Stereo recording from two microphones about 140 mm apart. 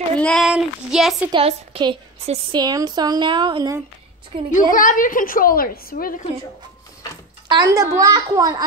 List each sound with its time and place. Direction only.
0.2 s speech: 5° left (ahead or behind)
1.3 s speech: 40° right (ahead or behind)
2.5 s speech: 30° right (ahead or behind)
4.5 s a woman's voice: 70° left (ahead or behind); by 6.2 s 90° left
7.4 s a child's voice: 30° right (ahead or behind)